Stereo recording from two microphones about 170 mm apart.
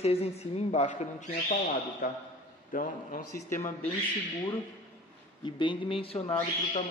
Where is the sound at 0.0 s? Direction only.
40° left (ahead or behind); by 3.2 s 55° left (ahead or behind).